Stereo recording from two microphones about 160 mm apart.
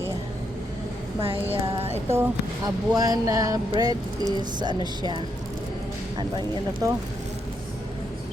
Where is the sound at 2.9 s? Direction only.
25° right (ahead or behind).